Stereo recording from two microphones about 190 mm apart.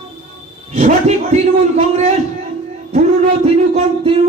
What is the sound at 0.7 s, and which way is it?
Speech, 40° right (ahead or behind).